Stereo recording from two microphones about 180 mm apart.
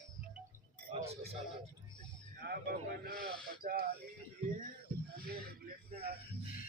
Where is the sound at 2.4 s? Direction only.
60° right (ahead or behind).